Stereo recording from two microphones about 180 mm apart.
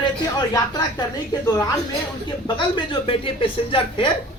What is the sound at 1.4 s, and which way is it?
Speech, 20° left (ahead or behind).